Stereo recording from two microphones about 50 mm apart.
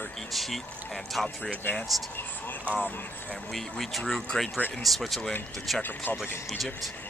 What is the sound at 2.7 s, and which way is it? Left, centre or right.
Speech, right.